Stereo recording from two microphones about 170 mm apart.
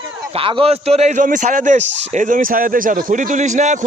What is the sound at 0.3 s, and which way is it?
A man's voice, 30° right (ahead or behind).